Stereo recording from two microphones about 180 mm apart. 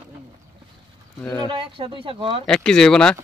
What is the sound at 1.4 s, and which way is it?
Speech, 30° right (ahead or behind).